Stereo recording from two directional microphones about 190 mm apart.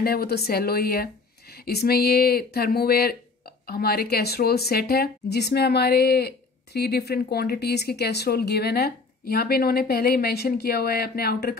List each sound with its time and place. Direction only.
0.0 s speech: 55° left (ahead or behind)